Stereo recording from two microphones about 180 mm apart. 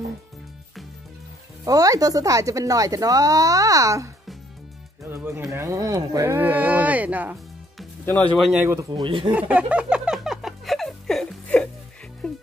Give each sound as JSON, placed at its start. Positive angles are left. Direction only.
{"t": 1.6, "sound": "speech", "side_deg": -20}
{"t": 5.1, "sound": "speech", "side_deg": -15}
{"t": 8.0, "sound": "speech", "side_deg": 5}
{"t": 8.6, "sound": "speech", "side_deg": -20}
{"t": 9.3, "sound": "a sound", "side_deg": -5}
{"t": 12.2, "sound": "music", "side_deg": 0}